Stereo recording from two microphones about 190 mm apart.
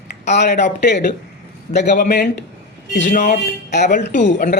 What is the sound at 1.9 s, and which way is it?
Speech, 45° left (ahead or behind).